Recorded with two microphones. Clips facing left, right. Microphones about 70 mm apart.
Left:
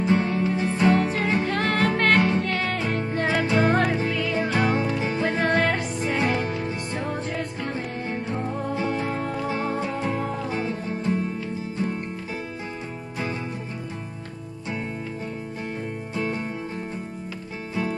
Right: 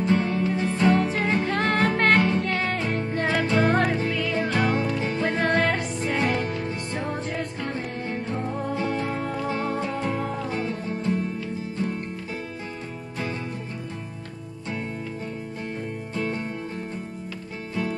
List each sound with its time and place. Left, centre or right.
0.0 s music: centre
1.5 s music: right
2.1 s music: centre
2.4 s music: centre
3.0 s music: centre
6.9 s music: centre
16.2 s music: centre